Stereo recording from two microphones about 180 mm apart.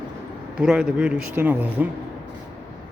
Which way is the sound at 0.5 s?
5° right (ahead or behind).